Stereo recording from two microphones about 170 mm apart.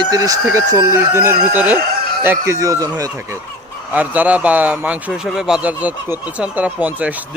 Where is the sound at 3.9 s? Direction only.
10° right (ahead or behind).